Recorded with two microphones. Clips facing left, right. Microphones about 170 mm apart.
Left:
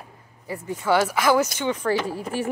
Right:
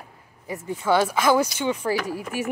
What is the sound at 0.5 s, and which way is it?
Speech, 20° right (ahead or behind).